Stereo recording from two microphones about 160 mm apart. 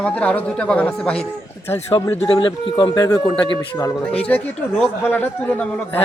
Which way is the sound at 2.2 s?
30° left (ahead or behind).